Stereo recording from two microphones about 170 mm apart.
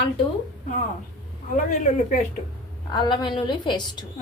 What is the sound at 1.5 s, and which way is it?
Speech, 50° left (ahead or behind).